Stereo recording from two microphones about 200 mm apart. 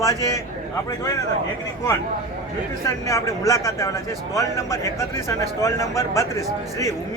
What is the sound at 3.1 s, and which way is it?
A man's voice, 15° left (ahead or behind).